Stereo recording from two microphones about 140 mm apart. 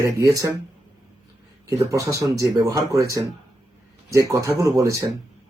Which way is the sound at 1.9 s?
25° right (ahead or behind).